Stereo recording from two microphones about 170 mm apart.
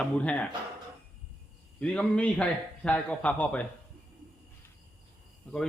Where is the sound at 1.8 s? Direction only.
5° left (ahead or behind).